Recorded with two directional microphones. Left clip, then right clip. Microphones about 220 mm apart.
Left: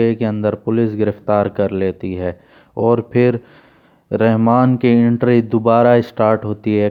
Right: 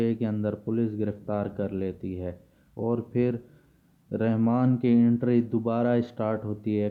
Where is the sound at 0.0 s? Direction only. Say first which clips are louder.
Left 12 dB; 30° left (ahead or behind).